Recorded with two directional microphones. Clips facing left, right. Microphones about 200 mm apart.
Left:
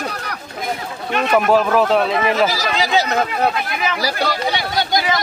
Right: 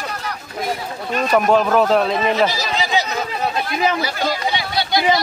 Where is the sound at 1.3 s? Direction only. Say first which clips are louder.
Even; 5° left (ahead or behind).